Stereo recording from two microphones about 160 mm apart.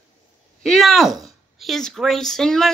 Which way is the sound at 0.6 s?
Centre (ahead or behind).